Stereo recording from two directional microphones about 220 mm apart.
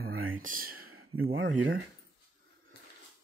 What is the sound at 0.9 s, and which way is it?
Speech, 70° right (ahead or behind).